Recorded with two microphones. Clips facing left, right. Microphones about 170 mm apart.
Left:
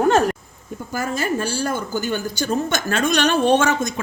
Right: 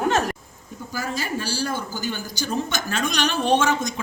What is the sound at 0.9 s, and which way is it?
A woman's voice, 55° left (ahead or behind).